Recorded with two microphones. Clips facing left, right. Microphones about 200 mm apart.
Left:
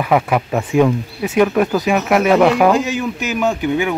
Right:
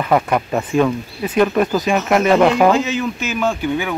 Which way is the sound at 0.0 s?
5° left (ahead or behind).